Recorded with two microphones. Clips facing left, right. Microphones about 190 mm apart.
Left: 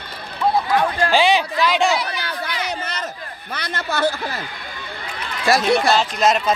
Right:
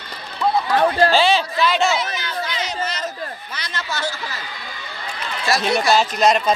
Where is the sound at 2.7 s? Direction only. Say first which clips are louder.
Right 1 dB; 60° left (ahead or behind).